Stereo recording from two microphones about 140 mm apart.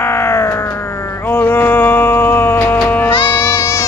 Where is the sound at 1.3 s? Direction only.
15° left (ahead or behind).